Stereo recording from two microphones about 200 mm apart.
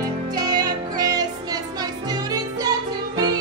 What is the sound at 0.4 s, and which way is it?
Music, 20° right (ahead or behind).